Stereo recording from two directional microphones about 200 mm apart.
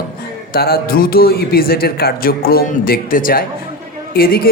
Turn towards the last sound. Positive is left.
turn(degrees=50)  # may be behind; listen again after turning